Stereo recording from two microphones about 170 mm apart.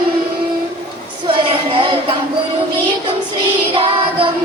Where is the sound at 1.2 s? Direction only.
30° right (ahead or behind).